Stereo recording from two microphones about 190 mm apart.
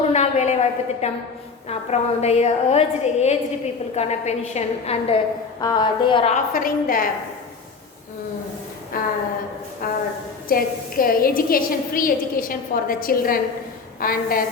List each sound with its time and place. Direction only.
0.1 s a sound: 35° left (ahead or behind)
1.7 s a woman's voice: 35° left (ahead or behind)
6.3 s a woman's voice: 45° left (ahead or behind)
8.9 s a woman's voice: 50° left (ahead or behind)